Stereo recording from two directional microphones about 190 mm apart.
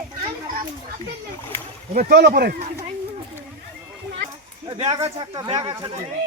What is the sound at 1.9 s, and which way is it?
Speech, 50° right (ahead or behind).